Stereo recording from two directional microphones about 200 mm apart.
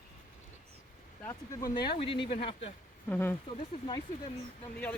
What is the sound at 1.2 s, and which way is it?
Speech, 15° left (ahead or behind).